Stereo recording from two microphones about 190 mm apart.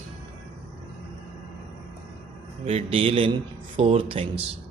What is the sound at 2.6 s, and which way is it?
A man's voice, 30° right (ahead or behind).